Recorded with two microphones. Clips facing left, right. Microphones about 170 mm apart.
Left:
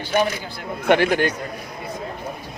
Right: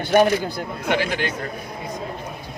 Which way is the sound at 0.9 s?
55° left (ahead or behind).